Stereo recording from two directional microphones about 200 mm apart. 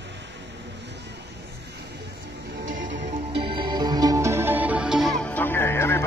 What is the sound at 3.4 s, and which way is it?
Music, 25° right (ahead or behind).